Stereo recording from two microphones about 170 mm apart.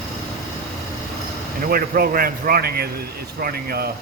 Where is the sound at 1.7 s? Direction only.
60° right (ahead or behind).